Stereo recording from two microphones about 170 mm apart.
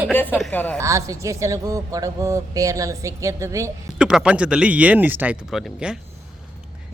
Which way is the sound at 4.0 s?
5° right (ahead or behind).